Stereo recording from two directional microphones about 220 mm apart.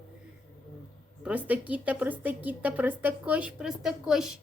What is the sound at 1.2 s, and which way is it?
A woman's voice, 5° right (ahead or behind).